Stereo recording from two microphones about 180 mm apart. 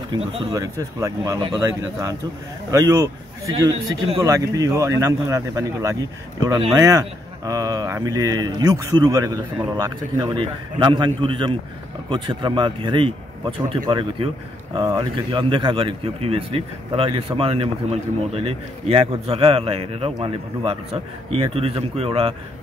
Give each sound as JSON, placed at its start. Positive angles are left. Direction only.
{"t": 0.1, "sound": "a man's voice", "side_deg": -20}